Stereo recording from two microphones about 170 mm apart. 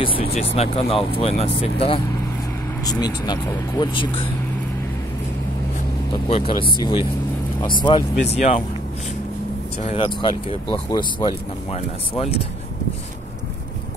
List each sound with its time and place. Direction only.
0.2 s speech: 35° left (ahead or behind)
2.8 s speech: 25° left (ahead or behind)
6.2 s speech: 30° left (ahead or behind)
8.4 s speech: 45° left (ahead or behind)
9.9 s speech: 30° left (ahead or behind)
11.7 s speech: 35° left (ahead or behind)